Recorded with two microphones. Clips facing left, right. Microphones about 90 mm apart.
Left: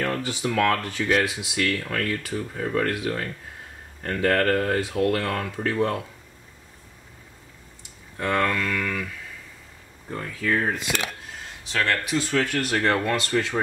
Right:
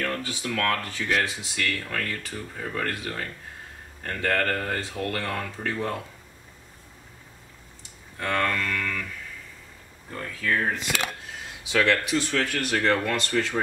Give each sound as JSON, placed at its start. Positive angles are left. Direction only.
{"t": 0.0, "sound": "speech", "side_deg": 25}
{"t": 1.1, "sound": "speech", "side_deg": 10}
{"t": 8.2, "sound": "speech", "side_deg": 20}
{"t": 10.1, "sound": "speech", "side_deg": 15}
{"t": 11.6, "sound": "speech", "side_deg": -5}
{"t": 12.7, "sound": "speech", "side_deg": 15}